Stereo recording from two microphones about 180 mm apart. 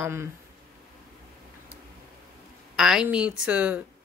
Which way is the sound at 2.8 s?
5° right (ahead or behind).